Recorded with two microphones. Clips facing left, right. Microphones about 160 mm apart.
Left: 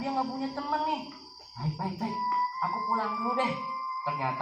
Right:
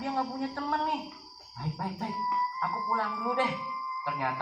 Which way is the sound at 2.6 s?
10° left (ahead or behind).